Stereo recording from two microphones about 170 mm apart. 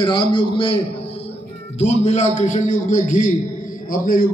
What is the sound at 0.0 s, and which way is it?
A man's voice, 30° left (ahead or behind).